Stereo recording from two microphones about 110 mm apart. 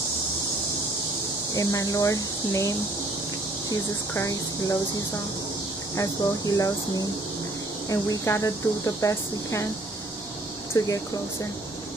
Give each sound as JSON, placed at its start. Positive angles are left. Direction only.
{"t": 1.5, "sound": "speech", "side_deg": 30}
{"t": 4.1, "sound": "speech", "side_deg": 30}
{"t": 5.9, "sound": "speech", "side_deg": 30}
{"t": 10.8, "sound": "speech", "side_deg": 30}